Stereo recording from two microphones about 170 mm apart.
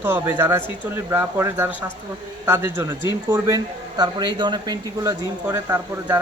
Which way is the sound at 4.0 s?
25° right (ahead or behind).